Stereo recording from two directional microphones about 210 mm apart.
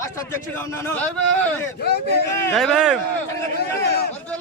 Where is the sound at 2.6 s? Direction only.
Centre (ahead or behind).